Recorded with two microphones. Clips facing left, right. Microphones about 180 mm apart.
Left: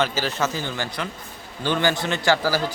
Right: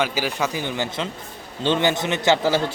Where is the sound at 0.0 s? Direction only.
10° right (ahead or behind).